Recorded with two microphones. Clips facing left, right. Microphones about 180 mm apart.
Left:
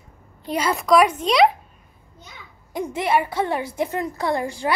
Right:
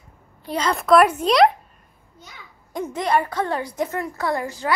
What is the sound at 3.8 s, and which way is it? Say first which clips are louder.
Speech: left 2 dB; 20° left (ahead or behind).